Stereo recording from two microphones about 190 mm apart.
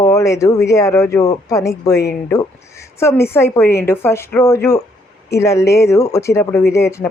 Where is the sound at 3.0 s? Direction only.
15° left (ahead or behind).